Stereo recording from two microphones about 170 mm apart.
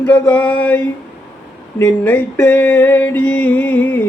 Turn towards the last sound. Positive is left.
turn(degrees=10)  # may be behind; listen again after turning